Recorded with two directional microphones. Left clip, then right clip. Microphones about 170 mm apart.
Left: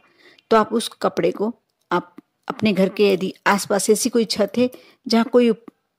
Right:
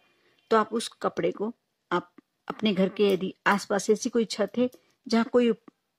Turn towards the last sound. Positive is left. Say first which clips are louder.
# left 7 dB
turn(degrees=30)  # may be behind; listen again after turning